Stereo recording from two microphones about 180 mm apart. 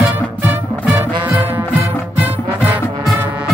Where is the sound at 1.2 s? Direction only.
10° right (ahead or behind).